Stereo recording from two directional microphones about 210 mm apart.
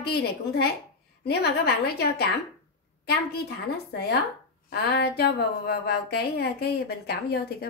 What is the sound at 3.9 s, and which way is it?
A woman's voice, 50° left (ahead or behind).